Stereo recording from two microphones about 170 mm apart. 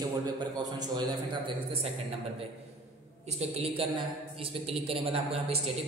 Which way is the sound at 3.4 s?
35° right (ahead or behind).